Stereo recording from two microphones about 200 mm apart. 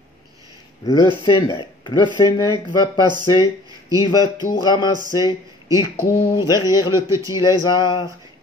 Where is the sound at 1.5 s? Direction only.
25° left (ahead or behind).